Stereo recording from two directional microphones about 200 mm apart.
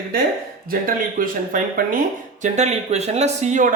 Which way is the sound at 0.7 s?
45° right (ahead or behind).